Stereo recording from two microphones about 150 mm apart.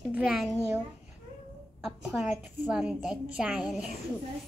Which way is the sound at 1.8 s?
Centre (ahead or behind).